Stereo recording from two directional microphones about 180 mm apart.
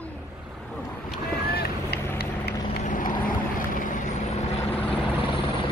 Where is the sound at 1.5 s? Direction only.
60° left (ahead or behind).